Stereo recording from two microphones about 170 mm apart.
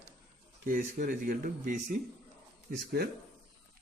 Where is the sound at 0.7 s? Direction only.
55° right (ahead or behind).